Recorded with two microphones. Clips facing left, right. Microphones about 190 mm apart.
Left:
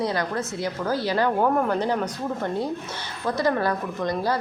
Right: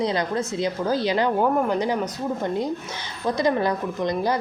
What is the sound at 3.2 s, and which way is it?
Speech, 15° right (ahead or behind).